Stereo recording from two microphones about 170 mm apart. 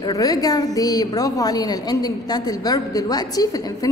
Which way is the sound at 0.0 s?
20° left (ahead or behind).